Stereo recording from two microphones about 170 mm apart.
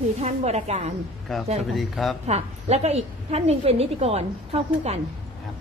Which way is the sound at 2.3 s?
40° right (ahead or behind).